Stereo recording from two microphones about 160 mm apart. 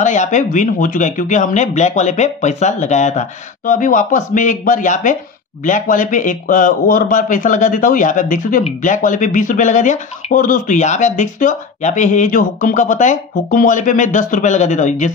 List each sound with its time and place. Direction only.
0.0 s speech: 50° left (ahead or behind)